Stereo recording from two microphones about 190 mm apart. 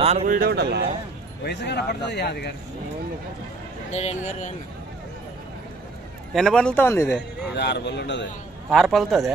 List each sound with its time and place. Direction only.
0.0 s speech: 35° right (ahead or behind)
0.3 s speech: 55° right (ahead or behind)
1.4 s speech: 65° left (ahead or behind)
3.9 s speech: 35° left (ahead or behind)
6.3 s a man's voice: 5° left (ahead or behind)
7.5 s speech: 65° left (ahead or behind)
8.6 s a man's voice: centre (ahead or behind)